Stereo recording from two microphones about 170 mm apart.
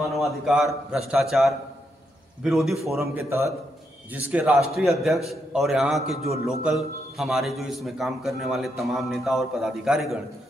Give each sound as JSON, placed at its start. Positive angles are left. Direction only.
{"t": 0.2, "sound": "a man's voice", "side_deg": 0}
{"t": 3.0, "sound": "a man's voice", "side_deg": -15}